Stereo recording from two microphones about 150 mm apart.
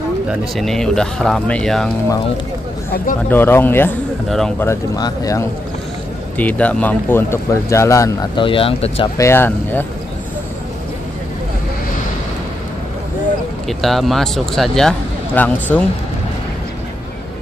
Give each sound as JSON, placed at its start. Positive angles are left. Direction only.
{"t": 0.3, "sound": "speech", "side_deg": 0}
{"t": 3.3, "sound": "speech", "side_deg": 15}
{"t": 4.3, "sound": "speech", "side_deg": 5}
{"t": 4.6, "sound": "speech", "side_deg": 20}
{"t": 6.3, "sound": "speech", "side_deg": 10}
{"t": 8.4, "sound": "speech", "side_deg": 35}
{"t": 9.2, "sound": "speech", "side_deg": 15}
{"t": 13.7, "sound": "speech", "side_deg": 0}